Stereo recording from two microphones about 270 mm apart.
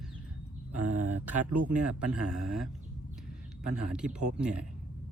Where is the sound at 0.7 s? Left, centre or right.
Right.